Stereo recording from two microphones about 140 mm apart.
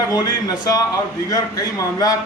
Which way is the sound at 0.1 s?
25° left (ahead or behind).